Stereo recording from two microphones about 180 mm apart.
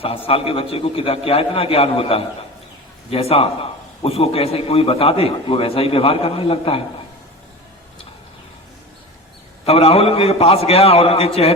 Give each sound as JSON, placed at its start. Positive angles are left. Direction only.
{"t": 0.0, "sound": "a man's voice", "side_deg": 30}
{"t": 9.6, "sound": "a man's voice", "side_deg": 35}